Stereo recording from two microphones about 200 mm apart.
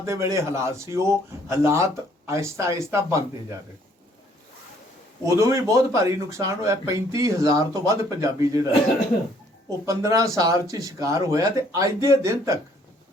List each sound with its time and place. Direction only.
0.0 s speech: 15° right (ahead or behind)
5.2 s speech: 15° right (ahead or behind)
9.8 s speech: 15° right (ahead or behind)